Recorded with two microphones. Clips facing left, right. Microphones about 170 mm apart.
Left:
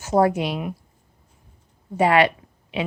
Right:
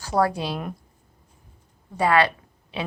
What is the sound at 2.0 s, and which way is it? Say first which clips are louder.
Speech: left 3 dB; 25° left (ahead or behind).